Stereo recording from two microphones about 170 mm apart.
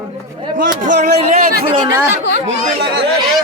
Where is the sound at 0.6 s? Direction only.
45° right (ahead or behind).